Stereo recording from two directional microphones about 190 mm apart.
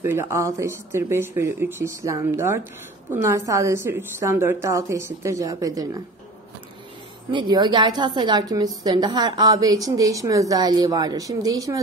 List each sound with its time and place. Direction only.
0.0 s a woman's voice: 15° right (ahead or behind)
7.2 s a woman's voice: 25° right (ahead or behind)